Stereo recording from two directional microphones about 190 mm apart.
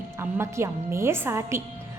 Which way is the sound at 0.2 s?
15° right (ahead or behind).